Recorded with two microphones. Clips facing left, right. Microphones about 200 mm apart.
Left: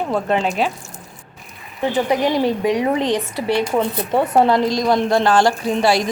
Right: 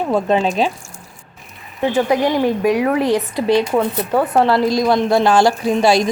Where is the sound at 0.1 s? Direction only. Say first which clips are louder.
Right 5 dB; 20° right (ahead or behind).